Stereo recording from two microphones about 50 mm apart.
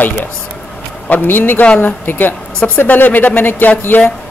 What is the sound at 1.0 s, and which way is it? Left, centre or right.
Speech, left.